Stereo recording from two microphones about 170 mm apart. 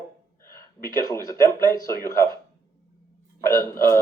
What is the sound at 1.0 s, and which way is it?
Speech, 20° left (ahead or behind).